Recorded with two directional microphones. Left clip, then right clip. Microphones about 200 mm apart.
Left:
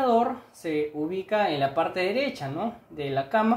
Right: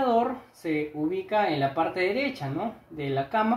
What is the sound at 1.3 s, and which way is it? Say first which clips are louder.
Speech: left 1 dB; 30° left (ahead or behind).